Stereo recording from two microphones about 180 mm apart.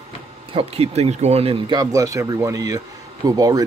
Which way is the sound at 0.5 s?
35° right (ahead or behind).